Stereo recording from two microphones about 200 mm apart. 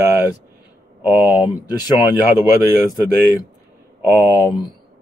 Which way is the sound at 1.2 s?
20° left (ahead or behind).